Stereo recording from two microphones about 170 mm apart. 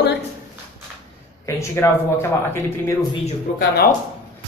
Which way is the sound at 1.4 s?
15° left (ahead or behind).